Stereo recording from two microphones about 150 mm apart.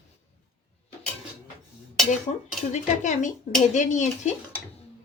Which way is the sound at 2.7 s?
55° left (ahead or behind).